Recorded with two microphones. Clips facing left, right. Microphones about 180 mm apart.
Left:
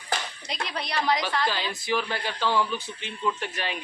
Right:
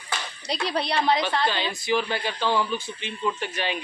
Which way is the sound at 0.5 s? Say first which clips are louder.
Right 5 dB; 35° right (ahead or behind).